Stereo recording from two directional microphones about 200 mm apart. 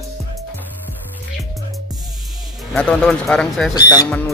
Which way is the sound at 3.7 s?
20° left (ahead or behind).